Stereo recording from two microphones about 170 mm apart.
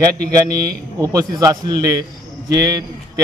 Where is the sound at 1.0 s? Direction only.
20° right (ahead or behind).